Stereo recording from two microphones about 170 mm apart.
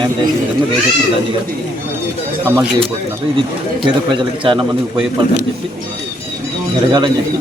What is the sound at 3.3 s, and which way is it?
A man's voice, 30° right (ahead or behind).